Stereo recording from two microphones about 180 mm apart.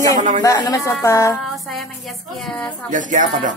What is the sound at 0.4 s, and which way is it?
Speech, 20° left (ahead or behind).